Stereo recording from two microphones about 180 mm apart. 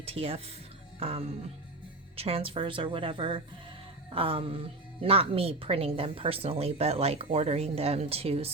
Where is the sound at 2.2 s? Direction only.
35° right (ahead or behind).